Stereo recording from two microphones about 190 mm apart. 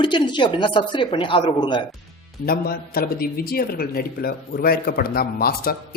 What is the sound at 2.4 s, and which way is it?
Speech, 50° left (ahead or behind).